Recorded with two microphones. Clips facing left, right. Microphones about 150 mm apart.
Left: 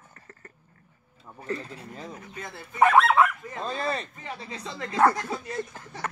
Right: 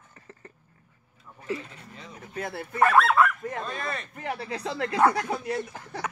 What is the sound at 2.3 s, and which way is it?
Speech, 65° right (ahead or behind).